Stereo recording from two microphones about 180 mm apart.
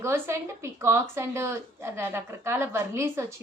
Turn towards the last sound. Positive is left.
turn(degrees=-15)  # may be behind; listen again after turning